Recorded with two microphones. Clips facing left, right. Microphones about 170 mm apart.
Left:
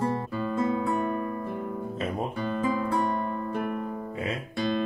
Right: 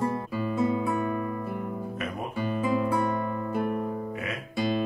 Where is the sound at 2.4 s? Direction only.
10° right (ahead or behind).